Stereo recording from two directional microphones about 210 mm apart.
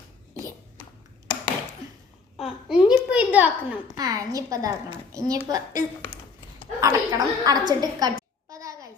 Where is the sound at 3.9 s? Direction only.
15° right (ahead or behind).